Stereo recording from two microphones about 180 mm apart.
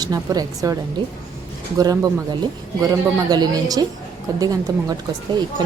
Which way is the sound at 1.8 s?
20° right (ahead or behind).